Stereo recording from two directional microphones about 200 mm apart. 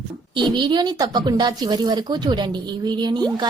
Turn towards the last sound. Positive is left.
turn(degrees=-20)  # may be behind; listen again after turning